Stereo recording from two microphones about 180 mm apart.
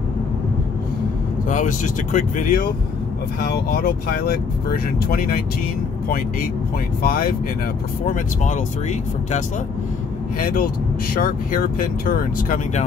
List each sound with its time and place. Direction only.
1.5 s speech: 45° left (ahead or behind)
7.0 s speech: 55° left (ahead or behind)
8.1 s speech: 40° left (ahead or behind)
10.4 s speech: 50° left (ahead or behind)